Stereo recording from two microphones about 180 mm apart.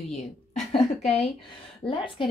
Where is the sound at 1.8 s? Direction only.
30° left (ahead or behind).